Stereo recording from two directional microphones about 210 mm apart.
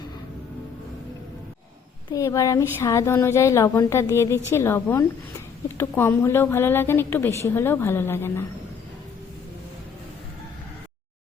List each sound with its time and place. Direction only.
2.0 s speech: 15° left (ahead or behind)